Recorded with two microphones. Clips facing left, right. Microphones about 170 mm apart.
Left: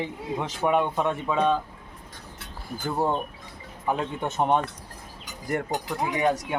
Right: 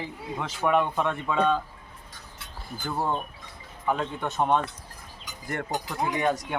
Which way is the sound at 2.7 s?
10° left (ahead or behind).